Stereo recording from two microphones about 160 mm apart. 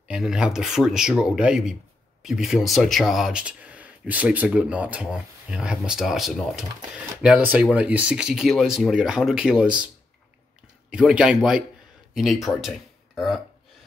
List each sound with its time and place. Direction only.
0.1 s speech: 5° right (ahead or behind)
10.9 s speech: 5° right (ahead or behind)